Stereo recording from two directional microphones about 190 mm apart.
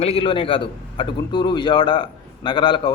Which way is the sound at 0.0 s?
30° left (ahead or behind).